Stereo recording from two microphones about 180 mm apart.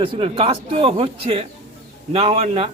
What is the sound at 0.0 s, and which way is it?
A man's voice, 30° right (ahead or behind).